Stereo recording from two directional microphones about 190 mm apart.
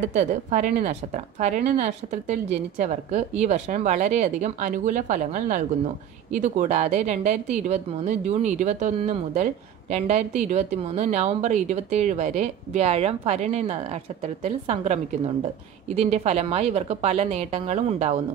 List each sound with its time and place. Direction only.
0.1 s speech: 40° right (ahead or behind)
16.0 s speech: 35° right (ahead or behind)